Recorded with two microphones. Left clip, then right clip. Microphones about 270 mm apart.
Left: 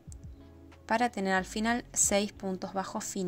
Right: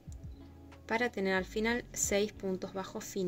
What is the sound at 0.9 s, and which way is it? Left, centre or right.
Speech, left.